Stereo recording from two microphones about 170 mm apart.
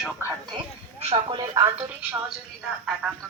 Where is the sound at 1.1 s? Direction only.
25° right (ahead or behind).